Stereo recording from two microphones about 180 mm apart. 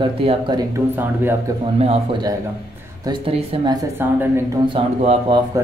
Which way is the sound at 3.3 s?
35° right (ahead or behind).